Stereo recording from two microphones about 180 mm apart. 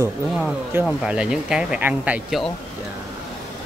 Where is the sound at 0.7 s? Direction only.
5° right (ahead or behind).